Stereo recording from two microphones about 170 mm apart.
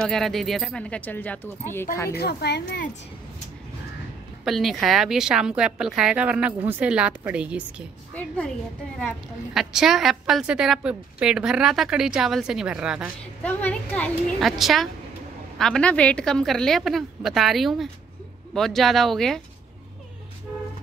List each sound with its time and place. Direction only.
0.1 s a woman's voice: centre (ahead or behind)
2.1 s a woman's voice: 70° left (ahead or behind)
4.5 s a woman's voice: centre (ahead or behind)
8.1 s a woman's voice: 10° left (ahead or behind)
13.4 s a woman's voice: 10° left (ahead or behind)